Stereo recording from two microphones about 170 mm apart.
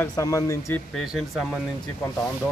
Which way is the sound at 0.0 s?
20° left (ahead or behind).